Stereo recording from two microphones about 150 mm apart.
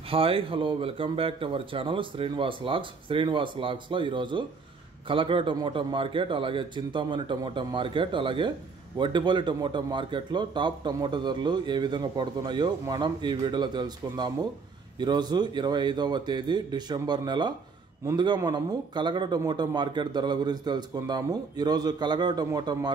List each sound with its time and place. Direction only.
0.1 s a man's voice: 40° right (ahead or behind)